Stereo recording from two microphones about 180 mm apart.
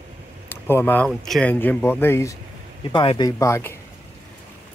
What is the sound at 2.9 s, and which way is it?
Speech, 30° left (ahead or behind).